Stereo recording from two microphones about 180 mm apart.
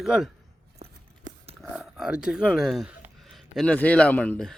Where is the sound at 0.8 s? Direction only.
35° right (ahead or behind).